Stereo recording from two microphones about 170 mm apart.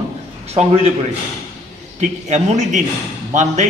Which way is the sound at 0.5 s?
35° right (ahead or behind).